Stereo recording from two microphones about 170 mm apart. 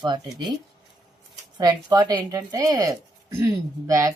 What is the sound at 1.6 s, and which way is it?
A woman's voice, 25° right (ahead or behind).